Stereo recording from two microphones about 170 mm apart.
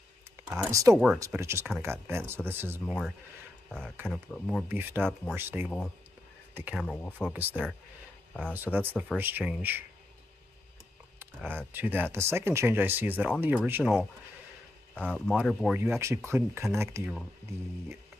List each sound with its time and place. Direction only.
0.7 s speech: 20° right (ahead or behind)
0.9 s speech: 5° right (ahead or behind)
1.2 s speech: 15° right (ahead or behind)
4.1 s speech: 5° left (ahead or behind)
4.6 s speech: 10° right (ahead or behind)
6.8 s speech: 5° left (ahead or behind)
7.2 s speech: 10° right (ahead or behind)
8.3 s speech: 5° left (ahead or behind)
8.7 s speech: 10° right (ahead or behind)
11.1 s speech: 10° right (ahead or behind)
15.0 s speech: 5° left (ahead or behind)
15.8 s speech: 15° right (ahead or behind)